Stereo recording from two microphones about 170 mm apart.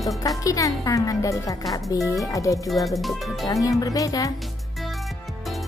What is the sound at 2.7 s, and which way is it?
Speech, centre (ahead or behind).